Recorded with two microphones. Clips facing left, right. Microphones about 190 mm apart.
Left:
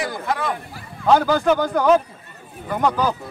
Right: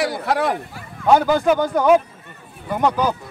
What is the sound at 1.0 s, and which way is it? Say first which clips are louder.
Speech: right 1 dB; 15° right (ahead or behind).